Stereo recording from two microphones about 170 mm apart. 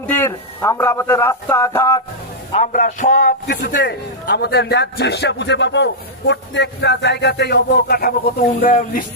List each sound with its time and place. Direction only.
0.1 s a man's voice: 15° left (ahead or behind)
2.5 s a man's voice: 45° left (ahead or behind)